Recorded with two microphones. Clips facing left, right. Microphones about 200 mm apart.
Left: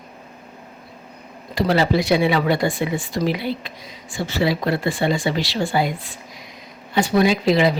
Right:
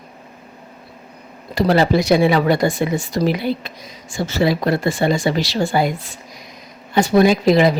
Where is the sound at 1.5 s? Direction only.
45° right (ahead or behind).